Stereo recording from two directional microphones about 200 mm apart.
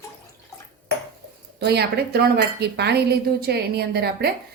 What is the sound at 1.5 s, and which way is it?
A woman's voice, 55° right (ahead or behind).